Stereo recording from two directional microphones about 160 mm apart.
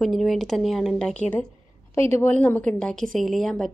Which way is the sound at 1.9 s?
15° left (ahead or behind).